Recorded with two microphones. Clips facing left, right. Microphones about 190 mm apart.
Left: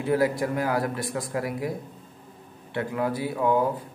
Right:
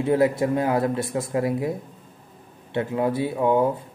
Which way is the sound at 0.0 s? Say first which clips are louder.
Right 4 dB; 25° right (ahead or behind).